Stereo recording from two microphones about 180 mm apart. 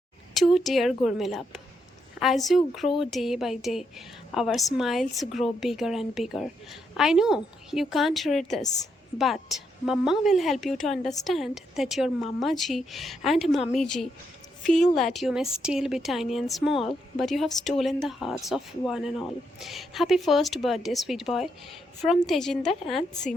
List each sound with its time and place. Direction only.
0.3 s a woman's voice: centre (ahead or behind)